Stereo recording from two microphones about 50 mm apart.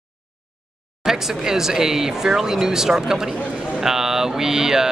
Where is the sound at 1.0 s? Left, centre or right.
Centre.